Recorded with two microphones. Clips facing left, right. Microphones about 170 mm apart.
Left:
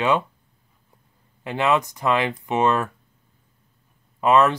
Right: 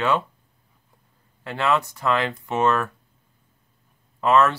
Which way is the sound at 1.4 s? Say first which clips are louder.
Left 2 dB; 15° left (ahead or behind).